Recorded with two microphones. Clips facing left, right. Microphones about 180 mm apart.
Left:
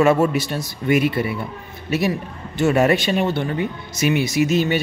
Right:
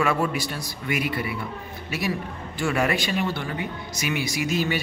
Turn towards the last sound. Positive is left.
turn(degrees=25)  # may be behind; listen again after turning